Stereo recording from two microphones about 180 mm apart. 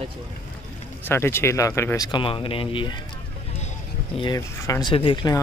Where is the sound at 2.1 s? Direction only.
25° left (ahead or behind).